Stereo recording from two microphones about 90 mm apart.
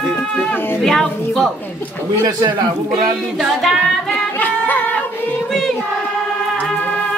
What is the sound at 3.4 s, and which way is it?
Child singing, centre (ahead or behind).